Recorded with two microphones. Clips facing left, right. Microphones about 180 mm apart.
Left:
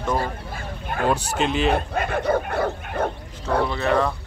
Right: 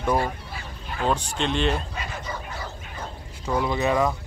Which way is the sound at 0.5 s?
55° left (ahead or behind).